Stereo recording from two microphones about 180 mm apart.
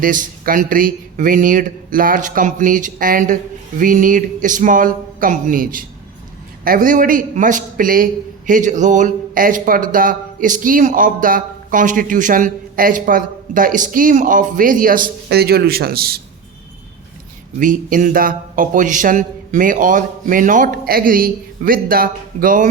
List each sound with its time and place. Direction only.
0.0 s a man's voice: 50° right (ahead or behind)
17.6 s a man's voice: 45° right (ahead or behind)